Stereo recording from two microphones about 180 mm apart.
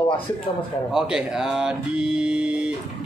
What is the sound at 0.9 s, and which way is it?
Speech, 5° right (ahead or behind).